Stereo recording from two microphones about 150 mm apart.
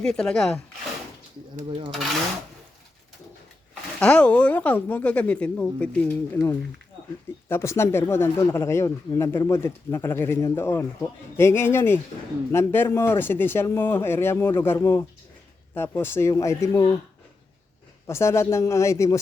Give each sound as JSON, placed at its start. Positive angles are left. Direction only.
{"t": 0.0, "sound": "speech", "side_deg": 5}
{"t": 4.0, "sound": "speech", "side_deg": 10}
{"t": 18.0, "sound": "speech", "side_deg": 20}